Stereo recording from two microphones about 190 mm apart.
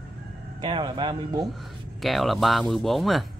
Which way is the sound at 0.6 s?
25° right (ahead or behind).